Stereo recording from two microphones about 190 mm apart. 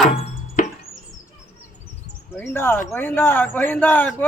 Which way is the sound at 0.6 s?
45° left (ahead or behind).